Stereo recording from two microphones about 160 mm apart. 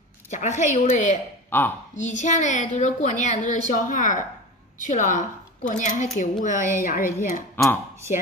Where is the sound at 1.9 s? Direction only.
50° left (ahead or behind).